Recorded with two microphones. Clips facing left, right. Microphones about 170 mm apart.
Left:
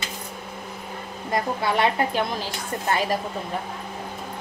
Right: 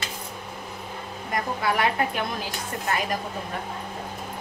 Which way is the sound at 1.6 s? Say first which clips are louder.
Left 1 dB; 25° left (ahead or behind).